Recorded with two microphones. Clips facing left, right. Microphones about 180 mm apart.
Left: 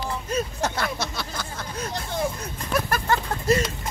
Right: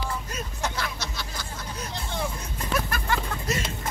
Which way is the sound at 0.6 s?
55° left (ahead or behind).